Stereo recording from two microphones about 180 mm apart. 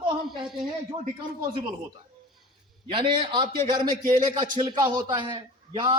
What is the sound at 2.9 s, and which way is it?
A man's voice, 25° right (ahead or behind).